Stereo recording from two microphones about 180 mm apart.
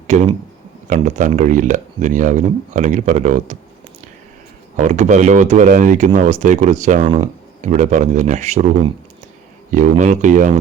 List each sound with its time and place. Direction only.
0.9 s speech: 40° right (ahead or behind)
4.8 s speech: 40° right (ahead or behind)
10.0 s speech: 40° right (ahead or behind)